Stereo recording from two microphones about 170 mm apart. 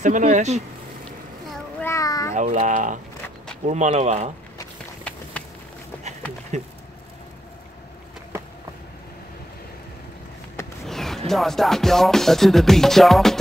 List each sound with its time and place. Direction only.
0.0 s speech: 45° right (ahead or behind)
1.8 s a sound: 15° left (ahead or behind)
2.3 s speech: 45° right (ahead or behind)
10.9 s music: centre (ahead or behind)